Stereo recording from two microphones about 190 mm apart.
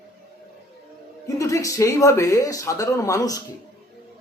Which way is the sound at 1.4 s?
15° left (ahead or behind).